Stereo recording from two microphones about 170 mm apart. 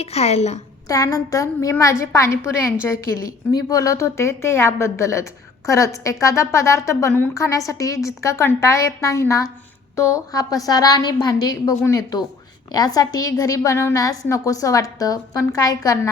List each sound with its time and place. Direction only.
0.0 s a woman's voice: 40° left (ahead or behind)
0.9 s a woman's voice: 20° left (ahead or behind)